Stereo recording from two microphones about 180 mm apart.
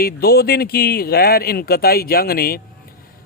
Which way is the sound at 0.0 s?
60° left (ahead or behind).